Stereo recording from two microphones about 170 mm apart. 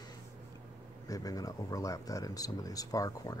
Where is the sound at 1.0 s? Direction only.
20° left (ahead or behind).